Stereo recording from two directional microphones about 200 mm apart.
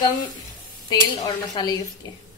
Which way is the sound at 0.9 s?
20° left (ahead or behind).